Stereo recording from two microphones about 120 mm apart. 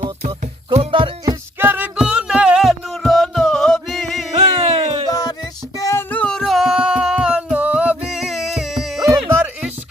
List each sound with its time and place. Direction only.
0.9 s music: 45° right (ahead or behind)
1.5 s music: 15° right (ahead or behind); by 4.3 s centre (ahead or behind)
4.4 s music: 55° right (ahead or behind)
5.0 s music: 35° left (ahead or behind)
6.1 s music: 10° left (ahead or behind)
9.0 s music: 20° right (ahead or behind)